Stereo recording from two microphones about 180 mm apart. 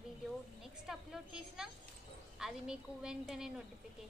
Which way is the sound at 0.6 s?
Centre (ahead or behind).